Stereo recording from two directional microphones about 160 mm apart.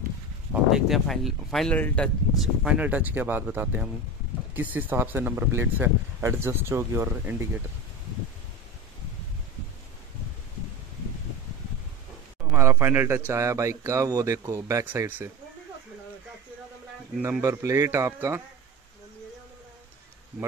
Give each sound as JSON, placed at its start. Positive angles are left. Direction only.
{"t": 0.5, "sound": "speech", "side_deg": -5}
{"t": 12.4, "sound": "a sound", "side_deg": -15}
{"t": 13.3, "sound": "speech", "side_deg": -20}
{"t": 17.2, "sound": "speech", "side_deg": -15}